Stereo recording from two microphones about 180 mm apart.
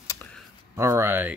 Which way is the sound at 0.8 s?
15° right (ahead or behind).